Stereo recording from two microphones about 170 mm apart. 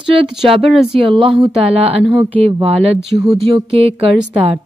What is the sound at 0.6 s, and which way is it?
Speech, centre (ahead or behind).